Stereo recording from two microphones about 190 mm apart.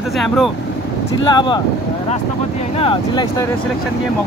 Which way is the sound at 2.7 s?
30° left (ahead or behind).